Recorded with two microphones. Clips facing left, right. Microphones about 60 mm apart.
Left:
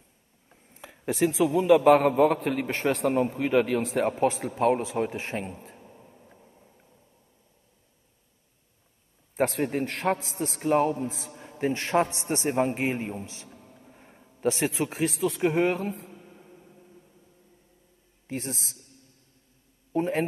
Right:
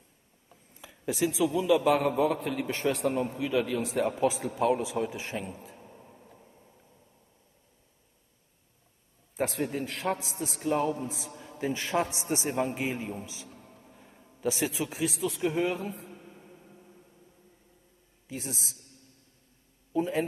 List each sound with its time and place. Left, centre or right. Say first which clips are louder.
0.7 s a man's voice: left 4 dB; left
4.5 s a man's voice: left 3 dB; left
5.8 s a sound: even; centre
9.4 s a man's voice: left 5 dB; left
11.6 s a man's voice: left 4 dB; left
13.9 s a sound: left 1 dB; left
14.4 s a man's voice: left 4 dB; left
16.3 s a sound: left 1 dB; left
18.2 s a man's voice: left 4 dB; left
19.9 s a man's voice: left 2 dB; left